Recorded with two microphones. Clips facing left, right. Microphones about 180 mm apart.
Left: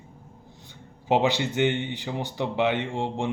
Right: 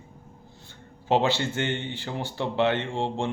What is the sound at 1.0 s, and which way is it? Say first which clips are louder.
Speech: left 1 dB; 15° left (ahead or behind).